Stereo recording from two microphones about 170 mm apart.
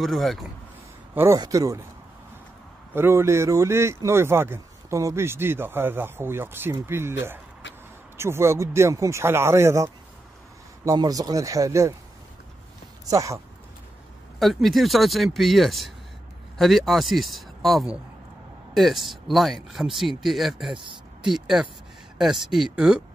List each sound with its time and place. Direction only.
0.0 s speech: centre (ahead or behind)
1.1 s speech: 15° right (ahead or behind)
2.9 s a man's voice: 15° right (ahead or behind)
10.9 s speech: 20° right (ahead or behind)
13.1 s speech: 20° right (ahead or behind)
14.4 s speech: centre (ahead or behind)
20.7 s speech: 30° right (ahead or behind)
21.2 s speech: 5° right (ahead or behind)